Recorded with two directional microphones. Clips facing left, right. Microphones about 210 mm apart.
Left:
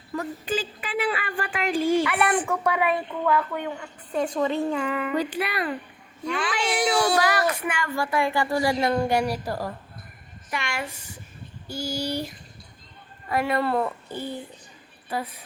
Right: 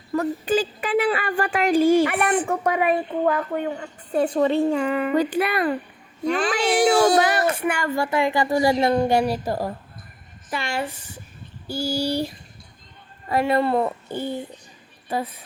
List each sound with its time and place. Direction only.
0.2 s a child's voice: 40° right (ahead or behind)
7.2 s a woman's voice: 25° right (ahead or behind)